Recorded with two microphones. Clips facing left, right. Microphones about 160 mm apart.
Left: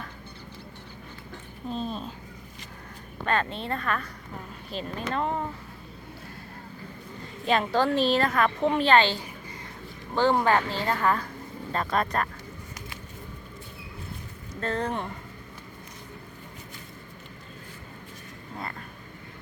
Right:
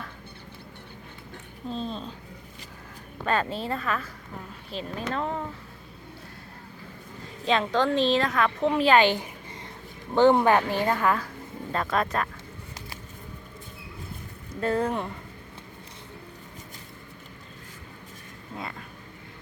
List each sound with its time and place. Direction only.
1.7 s speech: 10° left (ahead or behind)
3.3 s a woman's voice: 5° right (ahead or behind)
7.4 s a woman's voice: 5° left (ahead or behind)
14.6 s a woman's voice: 10° right (ahead or behind)